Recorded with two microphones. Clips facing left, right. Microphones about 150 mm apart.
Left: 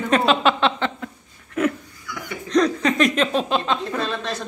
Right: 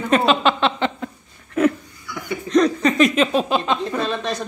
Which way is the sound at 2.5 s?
5° right (ahead or behind).